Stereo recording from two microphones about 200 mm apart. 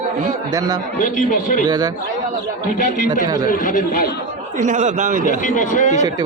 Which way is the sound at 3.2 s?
20° right (ahead or behind).